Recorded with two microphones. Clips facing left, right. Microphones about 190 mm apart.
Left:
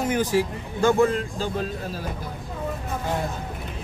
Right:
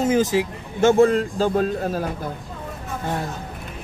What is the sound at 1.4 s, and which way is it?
Speech, 50° right (ahead or behind).